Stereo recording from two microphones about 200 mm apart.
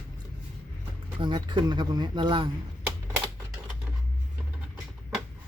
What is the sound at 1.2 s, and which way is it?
Speech, 25° right (ahead or behind).